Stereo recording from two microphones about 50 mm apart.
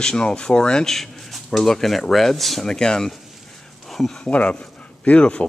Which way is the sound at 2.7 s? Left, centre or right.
Centre.